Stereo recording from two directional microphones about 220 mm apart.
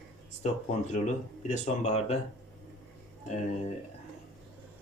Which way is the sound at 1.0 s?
30° left (ahead or behind).